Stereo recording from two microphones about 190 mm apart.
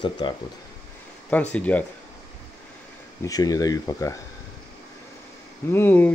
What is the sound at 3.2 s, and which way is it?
Speech, 20° left (ahead or behind).